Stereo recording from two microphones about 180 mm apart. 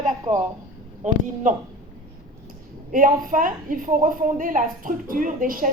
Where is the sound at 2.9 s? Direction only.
50° right (ahead or behind).